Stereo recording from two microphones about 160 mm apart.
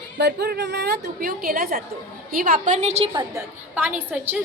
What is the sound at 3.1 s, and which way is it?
Speech, 20° right (ahead or behind).